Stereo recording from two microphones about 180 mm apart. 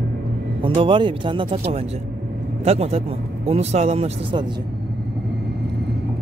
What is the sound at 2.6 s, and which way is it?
Speech, 35° right (ahead or behind).